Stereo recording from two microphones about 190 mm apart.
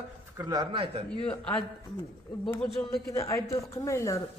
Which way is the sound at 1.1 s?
5° left (ahead or behind).